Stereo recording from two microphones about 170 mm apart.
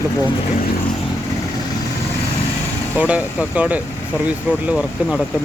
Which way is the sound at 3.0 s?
10° right (ahead or behind).